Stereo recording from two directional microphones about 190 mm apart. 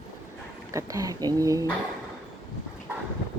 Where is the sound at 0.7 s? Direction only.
15° right (ahead or behind).